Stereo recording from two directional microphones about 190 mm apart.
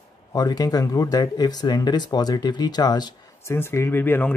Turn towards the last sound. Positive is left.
turn(degrees=10)  # may be behind; listen again after turning